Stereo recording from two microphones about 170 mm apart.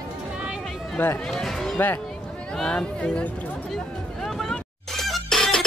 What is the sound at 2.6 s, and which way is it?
Speech, 5° left (ahead or behind).